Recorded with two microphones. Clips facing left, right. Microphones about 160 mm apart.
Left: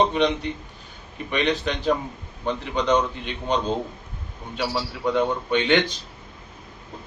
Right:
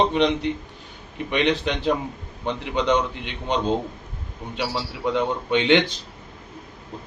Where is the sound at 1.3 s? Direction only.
20° right (ahead or behind).